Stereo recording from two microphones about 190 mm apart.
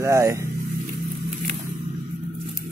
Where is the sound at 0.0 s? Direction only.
15° right (ahead or behind).